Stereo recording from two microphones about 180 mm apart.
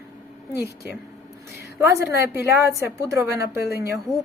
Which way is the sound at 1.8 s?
15° right (ahead or behind).